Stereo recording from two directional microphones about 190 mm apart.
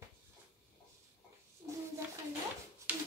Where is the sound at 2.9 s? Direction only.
10° right (ahead or behind).